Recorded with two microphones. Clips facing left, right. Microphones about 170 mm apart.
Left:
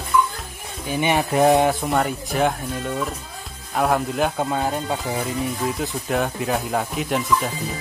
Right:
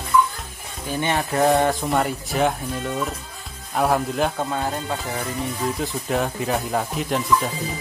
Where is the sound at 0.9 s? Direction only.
10° left (ahead or behind).